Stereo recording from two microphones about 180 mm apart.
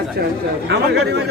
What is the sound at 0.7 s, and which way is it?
Speech, 65° right (ahead or behind).